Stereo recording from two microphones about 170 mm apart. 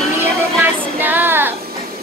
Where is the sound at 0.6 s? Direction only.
10° right (ahead or behind).